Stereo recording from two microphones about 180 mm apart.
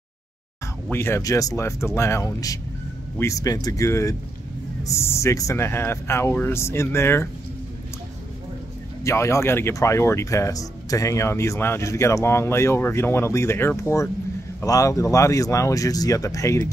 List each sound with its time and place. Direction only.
0.8 s speech: 15° left (ahead or behind)
9.0 s speech: 15° left (ahead or behind)